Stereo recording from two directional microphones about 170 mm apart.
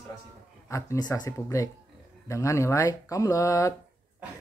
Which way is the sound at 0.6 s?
15° left (ahead or behind).